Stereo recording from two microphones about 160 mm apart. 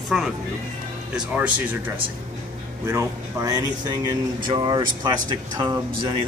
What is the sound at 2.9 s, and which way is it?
Speech, 20° right (ahead or behind).